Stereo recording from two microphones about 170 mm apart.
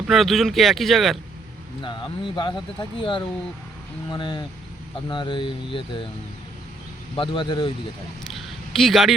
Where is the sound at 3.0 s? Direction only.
30° left (ahead or behind).